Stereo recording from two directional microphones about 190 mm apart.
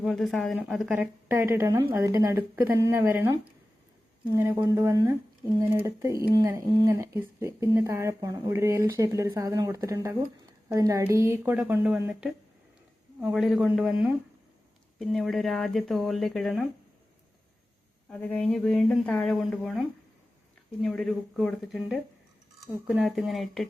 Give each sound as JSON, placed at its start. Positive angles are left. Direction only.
{"t": 0.0, "sound": "speech", "side_deg": 0}
{"t": 0.9, "sound": "speech", "side_deg": -10}
{"t": 4.4, "sound": "speech", "side_deg": -15}
{"t": 13.3, "sound": "speech", "side_deg": 0}
{"t": 14.9, "sound": "speech", "side_deg": 0}
{"t": 18.1, "sound": "speech", "side_deg": 5}
{"t": 20.8, "sound": "speech", "side_deg": 0}
{"t": 23.0, "sound": "speech", "side_deg": 0}